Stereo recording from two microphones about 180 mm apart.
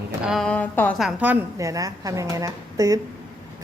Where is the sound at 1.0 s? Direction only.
10° right (ahead or behind).